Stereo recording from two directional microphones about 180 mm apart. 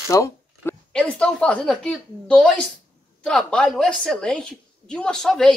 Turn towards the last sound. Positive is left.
turn(degrees=0)  # may be behind; listen again after turning